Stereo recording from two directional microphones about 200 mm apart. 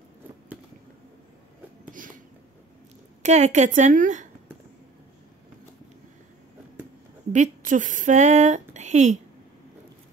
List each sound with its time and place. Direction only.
1.9 s a sound: 40° right (ahead or behind)
3.2 s a woman's voice: 35° right (ahead or behind)
7.3 s speech: 40° right (ahead or behind)